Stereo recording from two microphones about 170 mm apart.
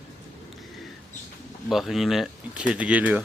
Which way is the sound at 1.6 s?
Centre (ahead or behind).